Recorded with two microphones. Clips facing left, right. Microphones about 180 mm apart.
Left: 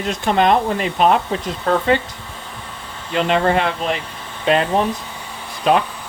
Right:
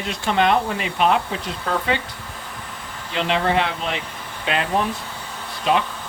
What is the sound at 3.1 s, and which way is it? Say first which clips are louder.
Speech: left 4 dB; 45° left (ahead or behind).